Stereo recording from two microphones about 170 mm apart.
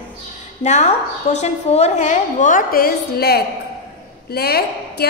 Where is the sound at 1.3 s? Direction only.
40° left (ahead or behind).